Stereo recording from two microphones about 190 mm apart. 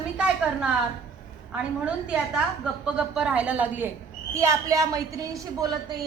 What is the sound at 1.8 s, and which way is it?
A woman's voice, 5° right (ahead or behind).